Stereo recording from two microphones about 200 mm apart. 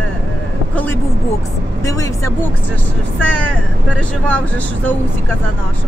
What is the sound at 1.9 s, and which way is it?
Speech, 15° left (ahead or behind).